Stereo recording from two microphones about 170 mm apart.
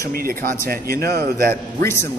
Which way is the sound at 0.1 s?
60° right (ahead or behind).